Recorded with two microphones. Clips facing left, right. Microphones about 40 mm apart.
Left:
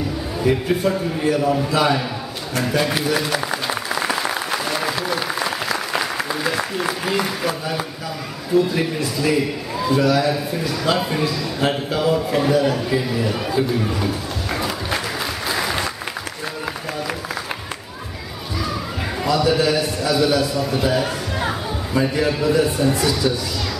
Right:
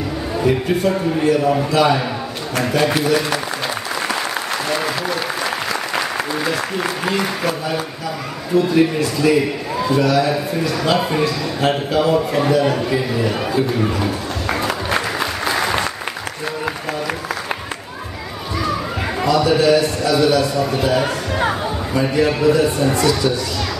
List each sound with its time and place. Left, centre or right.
0.4 s a man's voice: centre
1.4 s speech: centre
1.7 s a man's voice: centre
3.9 s applause: centre
6.8 s a man's voice: centre
14.9 s applause: centre
19.2 s a man's voice: centre
21.4 s music: centre
22.5 s a man's voice: centre